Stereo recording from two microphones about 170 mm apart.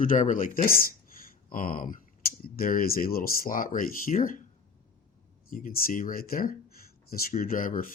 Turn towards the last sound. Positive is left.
turn(degrees=55)  # may be behind; listen again after turning